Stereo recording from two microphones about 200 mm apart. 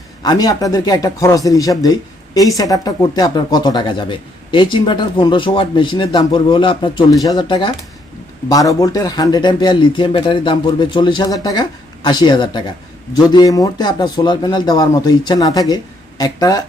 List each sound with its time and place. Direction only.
0.2 s speech: 20° left (ahead or behind)